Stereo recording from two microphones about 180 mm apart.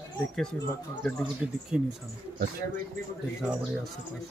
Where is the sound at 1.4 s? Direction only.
5° right (ahead or behind).